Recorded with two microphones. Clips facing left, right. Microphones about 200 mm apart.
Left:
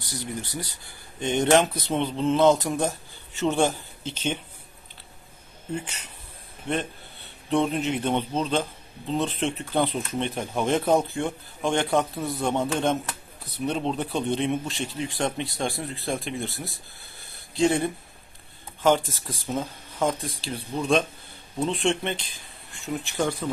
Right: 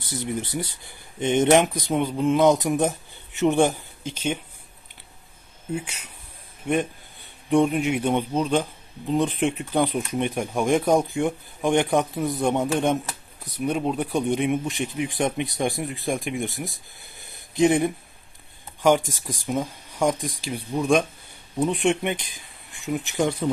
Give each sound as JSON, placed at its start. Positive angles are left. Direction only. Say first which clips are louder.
{"t": 0.0, "sound": "a man's voice", "louder": "right 5 dB", "side_deg": -25}
{"t": 5.7, "sound": "a man's voice", "louder": "right 2 dB", "side_deg": -10}